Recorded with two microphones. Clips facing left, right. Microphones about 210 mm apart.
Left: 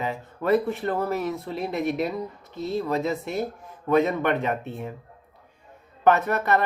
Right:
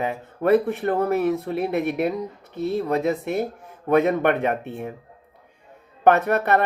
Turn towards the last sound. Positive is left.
turn(degrees=-55)  # may be behind; listen again after turning